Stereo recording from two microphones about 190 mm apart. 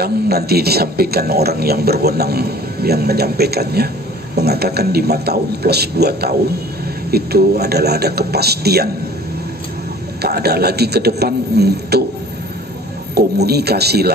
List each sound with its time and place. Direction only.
0.0 s speech: 55° right (ahead or behind)
10.2 s speech: 55° right (ahead or behind)
13.1 s speech: 60° right (ahead or behind)